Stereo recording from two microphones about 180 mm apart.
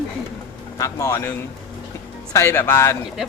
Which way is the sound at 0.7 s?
15° left (ahead or behind).